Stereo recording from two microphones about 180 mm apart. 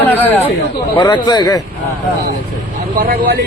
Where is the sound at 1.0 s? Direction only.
25° left (ahead or behind).